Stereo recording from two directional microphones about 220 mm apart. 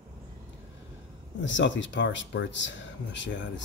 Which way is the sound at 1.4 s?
55° left (ahead or behind).